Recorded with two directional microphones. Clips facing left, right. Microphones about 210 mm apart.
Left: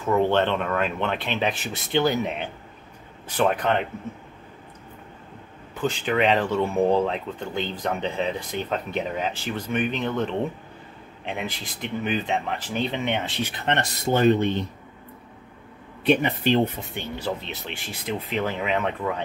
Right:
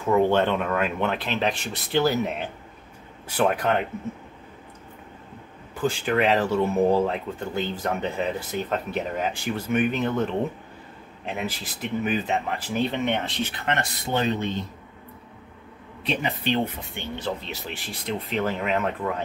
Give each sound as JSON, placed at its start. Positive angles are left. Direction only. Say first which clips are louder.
{"t": 0.0, "sound": "speech", "louder": "right 1 dB", "side_deg": -10}
{"t": 5.8, "sound": "speech", "louder": "even", "side_deg": -10}
{"t": 13.7, "sound": "speech", "louder": "left 5 dB", "side_deg": 40}
{"t": 17.2, "sound": "speech", "louder": "even", "side_deg": 0}